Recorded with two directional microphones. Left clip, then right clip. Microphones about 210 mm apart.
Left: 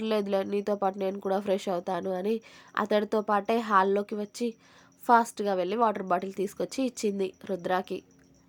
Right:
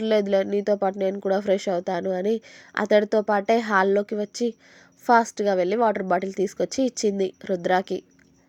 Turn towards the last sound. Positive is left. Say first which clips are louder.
# right 7 dB
turn(degrees=-15)  # may be behind; listen again after turning